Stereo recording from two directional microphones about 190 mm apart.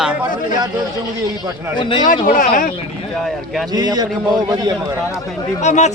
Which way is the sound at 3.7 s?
20° right (ahead or behind).